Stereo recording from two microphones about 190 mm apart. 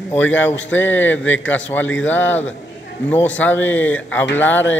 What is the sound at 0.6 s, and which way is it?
Speech, 85° left.